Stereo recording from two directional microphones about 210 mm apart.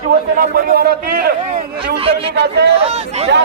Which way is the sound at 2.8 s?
30° right (ahead or behind).